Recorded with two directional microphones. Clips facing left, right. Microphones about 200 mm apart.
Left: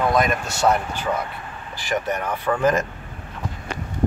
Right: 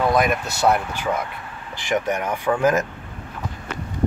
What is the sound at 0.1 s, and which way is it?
Speech, 5° right (ahead or behind).